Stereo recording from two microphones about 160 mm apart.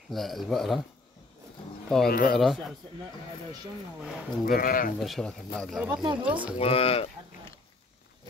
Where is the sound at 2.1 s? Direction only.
60° left (ahead or behind).